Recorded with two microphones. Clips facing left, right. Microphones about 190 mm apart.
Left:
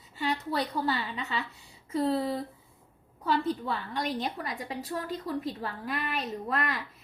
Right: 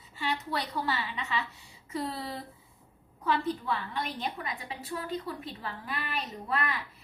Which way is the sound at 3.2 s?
35° left (ahead or behind).